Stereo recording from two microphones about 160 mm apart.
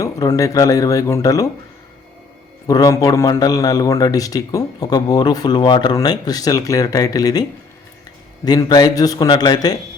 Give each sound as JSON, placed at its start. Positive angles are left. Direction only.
{"t": 0.0, "sound": "a man's voice", "side_deg": 20}
{"t": 2.6, "sound": "a man's voice", "side_deg": 20}
{"t": 8.4, "sound": "a man's voice", "side_deg": 25}